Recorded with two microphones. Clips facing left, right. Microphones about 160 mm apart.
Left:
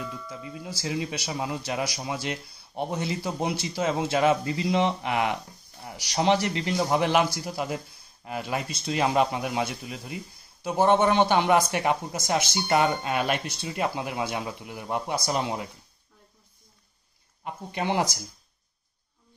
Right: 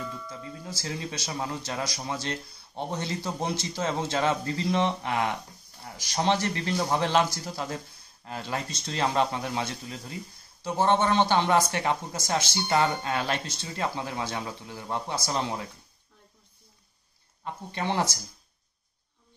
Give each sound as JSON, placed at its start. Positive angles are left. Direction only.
{"t": 0.0, "sound": "speech", "side_deg": 5}
{"t": 17.5, "sound": "speech", "side_deg": 15}